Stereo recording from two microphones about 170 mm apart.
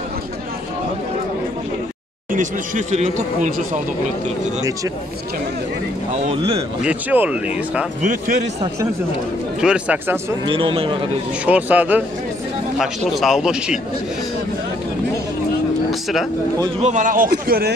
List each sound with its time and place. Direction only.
2.3 s speech: 45° right (ahead or behind)
6.1 s speech: 35° right (ahead or behind)
6.8 s speech: 10° right (ahead or behind)
8.0 s speech: 50° right (ahead or behind)
9.6 s speech: 5° right (ahead or behind)
10.4 s a man's voice: 30° right (ahead or behind)
11.4 s speech: 10° right (ahead or behind)
15.9 s vehicle: centre (ahead or behind)
16.8 s a man's voice: 50° right (ahead or behind); by 17.7 s 70° right (ahead or behind)